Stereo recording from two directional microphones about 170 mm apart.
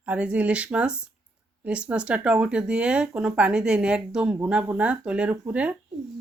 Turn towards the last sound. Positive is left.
turn(degrees=-10)  # may be behind; listen again after turning